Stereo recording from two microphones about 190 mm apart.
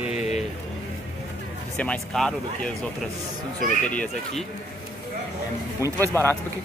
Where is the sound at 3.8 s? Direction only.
5° left (ahead or behind).